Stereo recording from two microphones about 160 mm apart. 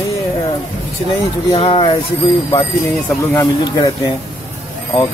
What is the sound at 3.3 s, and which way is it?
Speech, 15° left (ahead or behind).